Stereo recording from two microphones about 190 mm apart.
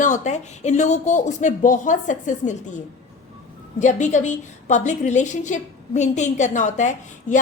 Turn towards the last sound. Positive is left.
turn(degrees=40)  # may be behind; listen again after turning